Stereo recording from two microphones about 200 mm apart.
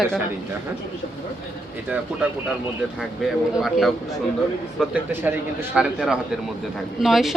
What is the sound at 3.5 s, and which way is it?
Speech, centre (ahead or behind).